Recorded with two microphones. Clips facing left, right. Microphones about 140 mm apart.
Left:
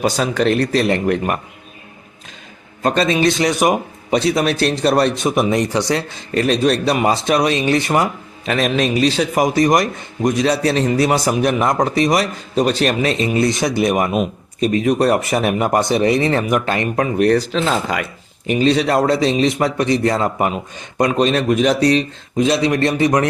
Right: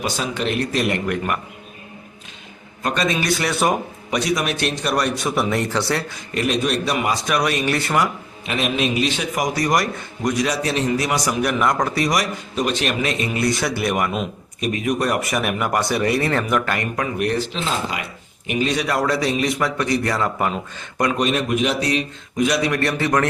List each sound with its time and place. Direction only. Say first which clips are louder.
0.0 s speech: left 7 dB; 40° left (ahead or behind)
2.8 s a man's voice: left 6 dB; 30° left (ahead or behind); by 3.8 s 15° left (ahead or behind)
4.1 s a man's voice: left 5 dB; 30° left (ahead or behind)
8.4 s a man's voice: left 4 dB; 40° left (ahead or behind); by 14.3 s 20° left (ahead or behind)
14.6 s a man's voice: left 6 dB; 30° left (ahead or behind)
18.4 s a man's voice: left 6 dB; 30° left (ahead or behind)